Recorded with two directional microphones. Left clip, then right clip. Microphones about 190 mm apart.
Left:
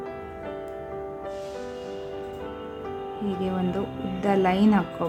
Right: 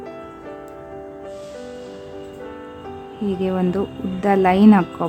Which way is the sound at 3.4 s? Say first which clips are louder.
Right 8 dB; 25° right (ahead or behind).